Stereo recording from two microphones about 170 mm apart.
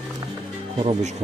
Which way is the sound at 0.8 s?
35° right (ahead or behind).